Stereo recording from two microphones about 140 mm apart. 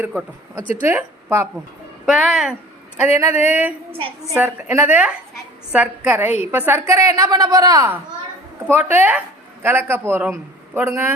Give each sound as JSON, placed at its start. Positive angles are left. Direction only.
{"t": 0.7, "sound": "a man's voice", "side_deg": -15}
{"t": 2.0, "sound": "speech", "side_deg": -5}
{"t": 3.2, "sound": "a man's voice", "side_deg": -15}
{"t": 3.9, "sound": "a woman's voice", "side_deg": -40}
{"t": 4.4, "sound": "a man's voice", "side_deg": -15}
{"t": 8.6, "sound": "a man's voice", "side_deg": -15}